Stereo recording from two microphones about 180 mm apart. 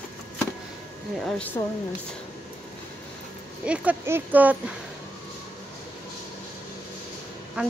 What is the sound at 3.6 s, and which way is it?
Speech, 5° right (ahead or behind).